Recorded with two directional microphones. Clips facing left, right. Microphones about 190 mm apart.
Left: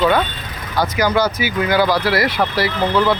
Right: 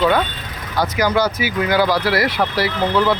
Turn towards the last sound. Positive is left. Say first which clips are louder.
# left 1 dB
turn(degrees=-5)  # may be behind; listen again after turning